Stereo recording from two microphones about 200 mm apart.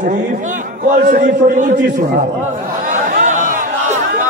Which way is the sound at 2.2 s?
40° right (ahead or behind).